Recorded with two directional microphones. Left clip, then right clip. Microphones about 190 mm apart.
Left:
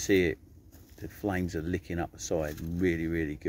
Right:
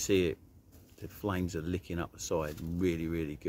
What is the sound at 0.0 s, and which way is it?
Speech, 5° right (ahead or behind).